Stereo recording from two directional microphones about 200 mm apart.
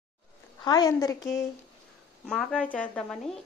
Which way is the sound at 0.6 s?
20° left (ahead or behind).